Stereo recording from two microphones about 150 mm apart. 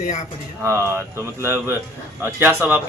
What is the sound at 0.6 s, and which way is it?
Speech, 20° right (ahead or behind).